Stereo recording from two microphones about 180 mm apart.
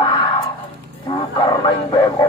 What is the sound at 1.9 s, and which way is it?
Speech, 20° left (ahead or behind).